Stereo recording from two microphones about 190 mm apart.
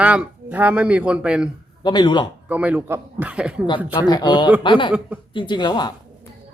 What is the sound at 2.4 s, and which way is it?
Speech, 10° right (ahead or behind).